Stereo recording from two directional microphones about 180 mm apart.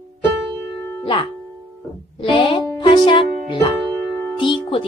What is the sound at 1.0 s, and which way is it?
Music, 30° left (ahead or behind).